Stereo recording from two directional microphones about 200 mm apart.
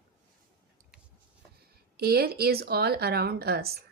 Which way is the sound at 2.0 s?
50° right (ahead or behind).